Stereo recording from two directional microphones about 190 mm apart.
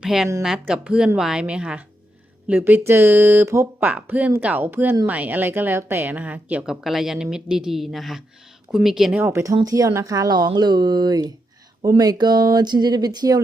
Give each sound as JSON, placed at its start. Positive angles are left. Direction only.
{"t": 0.0, "sound": "a woman's voice", "side_deg": 0}
{"t": 9.2, "sound": "speech", "side_deg": -15}